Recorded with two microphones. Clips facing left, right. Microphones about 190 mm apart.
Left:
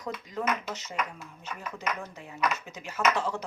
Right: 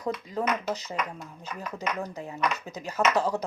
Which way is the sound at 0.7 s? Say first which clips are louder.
Right 6 dB; 35° right (ahead or behind).